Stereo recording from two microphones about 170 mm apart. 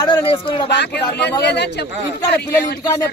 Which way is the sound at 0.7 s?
80° left.